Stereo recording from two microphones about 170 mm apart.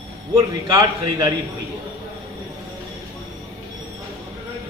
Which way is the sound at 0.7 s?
20° right (ahead or behind).